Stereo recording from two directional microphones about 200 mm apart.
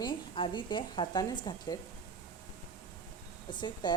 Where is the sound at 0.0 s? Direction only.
25° left (ahead or behind).